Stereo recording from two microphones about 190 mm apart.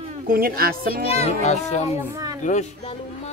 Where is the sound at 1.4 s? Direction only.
35° left (ahead or behind).